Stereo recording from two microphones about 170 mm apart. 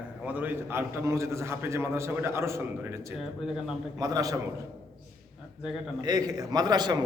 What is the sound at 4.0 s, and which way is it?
Speech, 20° right (ahead or behind).